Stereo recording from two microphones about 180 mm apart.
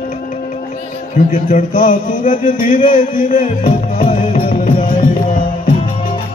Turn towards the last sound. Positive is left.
turn(degrees=50)  # may be behind; listen again after turning